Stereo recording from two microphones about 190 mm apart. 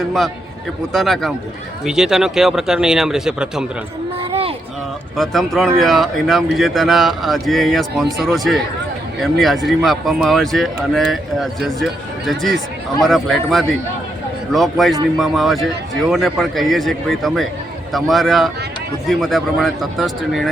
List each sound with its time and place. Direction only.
0.9 s speech: centre (ahead or behind)
4.2 s a sound: 30° right (ahead or behind)
5.1 s speech: centre (ahead or behind)